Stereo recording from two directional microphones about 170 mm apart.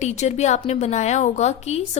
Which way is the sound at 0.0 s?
40° left (ahead or behind).